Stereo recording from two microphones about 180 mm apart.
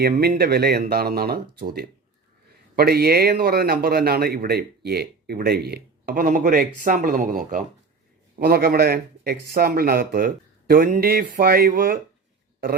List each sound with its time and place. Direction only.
0.0 s a man's voice: 60° right (ahead or behind)
8.4 s a man's voice: 60° right (ahead or behind)